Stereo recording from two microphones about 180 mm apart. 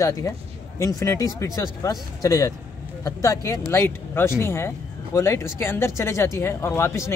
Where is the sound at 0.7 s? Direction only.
15° left (ahead or behind).